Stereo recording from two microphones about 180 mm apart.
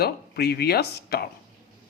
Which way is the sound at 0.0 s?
60° left (ahead or behind).